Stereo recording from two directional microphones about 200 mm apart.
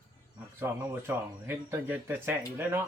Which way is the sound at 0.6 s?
10° right (ahead or behind).